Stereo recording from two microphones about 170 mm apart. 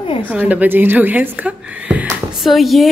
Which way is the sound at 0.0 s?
30° left (ahead or behind).